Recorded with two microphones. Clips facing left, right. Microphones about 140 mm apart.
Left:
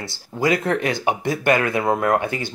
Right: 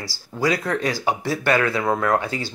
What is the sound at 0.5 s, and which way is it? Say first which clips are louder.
Speech: left 2 dB; 20° left (ahead or behind).